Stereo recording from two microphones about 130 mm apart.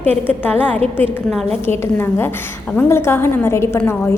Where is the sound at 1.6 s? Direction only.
15° left (ahead or behind).